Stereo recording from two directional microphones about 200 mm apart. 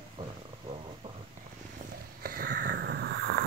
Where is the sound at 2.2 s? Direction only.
45° right (ahead or behind).